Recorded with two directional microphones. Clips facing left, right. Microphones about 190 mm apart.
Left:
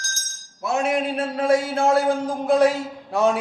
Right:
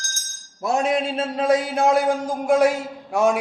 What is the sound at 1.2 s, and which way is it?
A man's voice, 20° right (ahead or behind).